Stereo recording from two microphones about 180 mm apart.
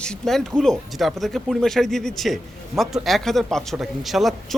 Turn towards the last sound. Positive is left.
turn(degrees=0)  # may be behind; listen again after turning